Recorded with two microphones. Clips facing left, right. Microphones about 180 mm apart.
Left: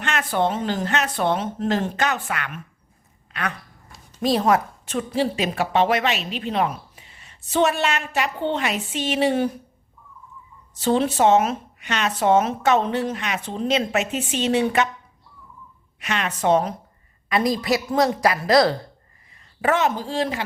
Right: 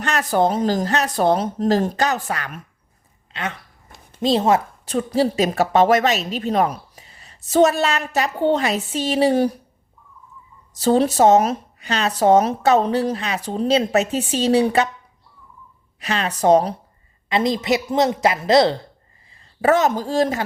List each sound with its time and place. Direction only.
0.0 s a woman's voice: 40° right (ahead or behind)
3.3 s a woman's voice: 25° right (ahead or behind)
10.8 s a woman's voice: 40° right (ahead or behind)
16.0 s a woman's voice: 35° right (ahead or behind)
17.2 s a woman's voice: 25° right (ahead or behind)
19.6 s a woman's voice: 40° right (ahead or behind)